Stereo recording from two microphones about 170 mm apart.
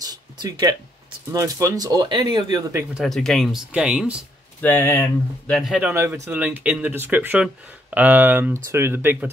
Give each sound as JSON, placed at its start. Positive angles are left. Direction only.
{"t": 0.0, "sound": "a sound", "side_deg": -20}
{"t": 1.3, "sound": "speech", "side_deg": -20}
{"t": 2.9, "sound": "speech", "side_deg": 0}
{"t": 4.6, "sound": "speech", "side_deg": 10}
{"t": 5.6, "sound": "speech", "side_deg": -5}